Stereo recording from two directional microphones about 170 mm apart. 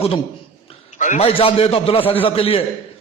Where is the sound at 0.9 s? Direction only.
45° left (ahead or behind).